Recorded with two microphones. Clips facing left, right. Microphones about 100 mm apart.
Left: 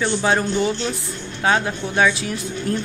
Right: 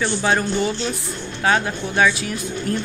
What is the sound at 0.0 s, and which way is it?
Speech, 20° left (ahead or behind).